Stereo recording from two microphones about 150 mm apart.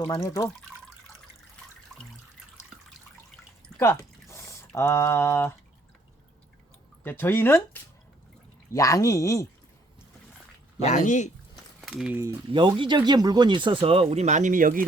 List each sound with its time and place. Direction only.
0.1 s speech: 20° left (ahead or behind)
3.8 s a sound: 15° left (ahead or behind)
7.0 s speech: 15° left (ahead or behind)
10.8 s speech: 55° left (ahead or behind)
11.8 s a sound: 5° right (ahead or behind)
12.5 s speech: 35° right (ahead or behind); by 14.8 s 65° right (ahead or behind)